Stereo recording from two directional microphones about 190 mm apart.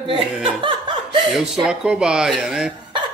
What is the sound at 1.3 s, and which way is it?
Speech, centre (ahead or behind).